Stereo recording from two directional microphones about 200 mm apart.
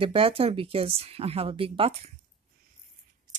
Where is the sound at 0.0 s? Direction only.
25° right (ahead or behind).